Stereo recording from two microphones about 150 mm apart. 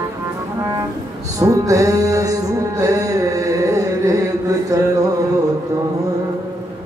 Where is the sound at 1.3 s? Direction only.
20° right (ahead or behind).